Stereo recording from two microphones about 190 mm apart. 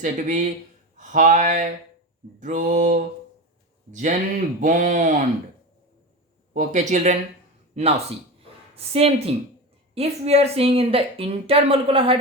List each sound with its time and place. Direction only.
0.0 s a woman's voice: 40° right (ahead or behind)
4.6 s a woman's voice: 40° right (ahead or behind)
6.5 s a woman's voice: 40° right (ahead or behind)